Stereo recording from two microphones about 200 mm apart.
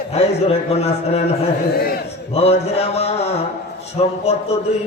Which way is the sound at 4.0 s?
30° left (ahead or behind).